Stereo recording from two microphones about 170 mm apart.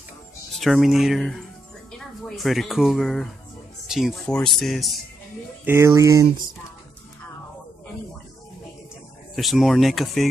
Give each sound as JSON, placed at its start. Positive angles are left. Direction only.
{"t": 0.6, "sound": "speech", "side_deg": 0}
{"t": 5.7, "sound": "speech", "side_deg": -15}
{"t": 9.3, "sound": "speech", "side_deg": 0}